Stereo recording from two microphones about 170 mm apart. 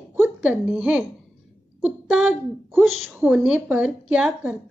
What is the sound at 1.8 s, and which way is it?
A woman's voice, 5° right (ahead or behind).